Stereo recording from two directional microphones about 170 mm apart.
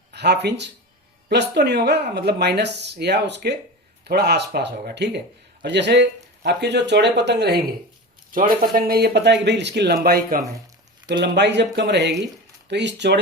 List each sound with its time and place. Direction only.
0.1 s speech: 80° right
4.0 s speech: 75° right (ahead or behind)
5.6 s speech: 90° right
8.3 s speech: 55° right (ahead or behind)
11.2 s speech: 90° right